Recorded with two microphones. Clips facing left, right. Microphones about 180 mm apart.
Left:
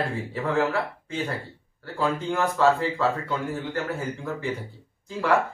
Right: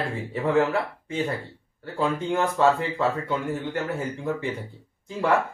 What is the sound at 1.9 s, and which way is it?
Speech, 20° right (ahead or behind).